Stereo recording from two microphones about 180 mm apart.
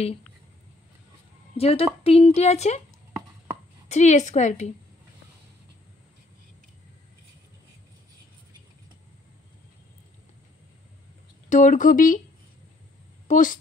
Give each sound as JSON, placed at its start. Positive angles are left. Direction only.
{"t": 1.6, "sound": "a woman's voice", "side_deg": 30}
{"t": 3.9, "sound": "a woman's voice", "side_deg": 40}
{"t": 11.4, "sound": "speech", "side_deg": 45}
{"t": 13.3, "sound": "speech", "side_deg": 45}